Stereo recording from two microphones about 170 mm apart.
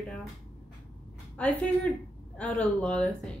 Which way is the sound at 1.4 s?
5° left (ahead or behind).